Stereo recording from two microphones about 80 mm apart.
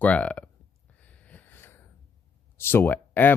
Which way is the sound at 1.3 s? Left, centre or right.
Left.